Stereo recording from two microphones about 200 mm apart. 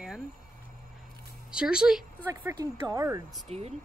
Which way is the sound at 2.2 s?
15° right (ahead or behind).